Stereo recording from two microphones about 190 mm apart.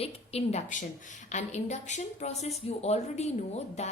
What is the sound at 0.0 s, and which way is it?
A woman's voice, 35° left (ahead or behind).